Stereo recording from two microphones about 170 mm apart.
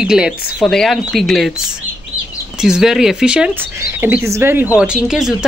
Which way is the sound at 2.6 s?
5° right (ahead or behind).